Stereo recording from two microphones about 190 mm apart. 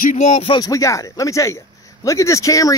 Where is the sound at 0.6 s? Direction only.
15° left (ahead or behind).